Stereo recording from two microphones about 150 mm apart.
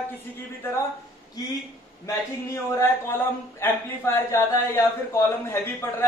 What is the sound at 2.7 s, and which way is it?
A man's voice, 15° left (ahead or behind).